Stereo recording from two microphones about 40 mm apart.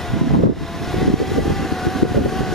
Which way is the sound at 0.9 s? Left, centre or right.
Centre.